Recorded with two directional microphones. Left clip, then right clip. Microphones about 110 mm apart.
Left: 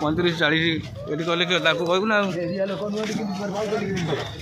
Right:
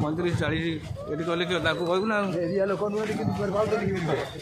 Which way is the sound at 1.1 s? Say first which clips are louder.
Left 5 dB; 30° left (ahead or behind).